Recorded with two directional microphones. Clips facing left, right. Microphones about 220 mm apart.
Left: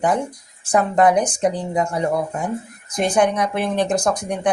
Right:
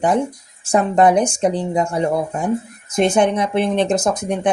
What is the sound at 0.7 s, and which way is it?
Speech, 25° right (ahead or behind).